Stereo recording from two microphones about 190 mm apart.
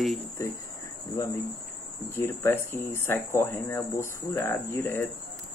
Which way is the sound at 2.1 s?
10° left (ahead or behind).